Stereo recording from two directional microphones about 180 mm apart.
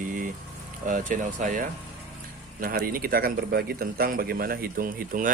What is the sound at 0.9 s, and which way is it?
Speech, 45° right (ahead or behind).